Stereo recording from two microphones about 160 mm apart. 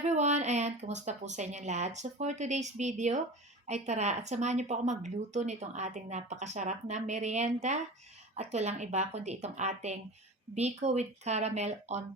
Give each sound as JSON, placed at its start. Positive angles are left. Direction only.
{"t": 0.0, "sound": "speech", "side_deg": -45}